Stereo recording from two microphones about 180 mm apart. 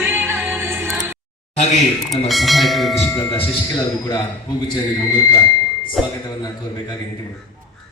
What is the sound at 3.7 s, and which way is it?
Speech, 20° left (ahead or behind).